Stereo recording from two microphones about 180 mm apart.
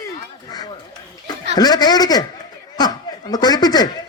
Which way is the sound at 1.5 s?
20° left (ahead or behind).